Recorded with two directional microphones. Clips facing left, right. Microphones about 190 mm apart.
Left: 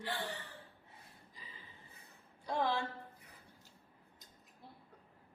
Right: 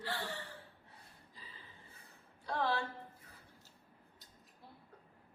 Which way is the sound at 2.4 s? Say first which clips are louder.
Left 1 dB; 15° left (ahead or behind).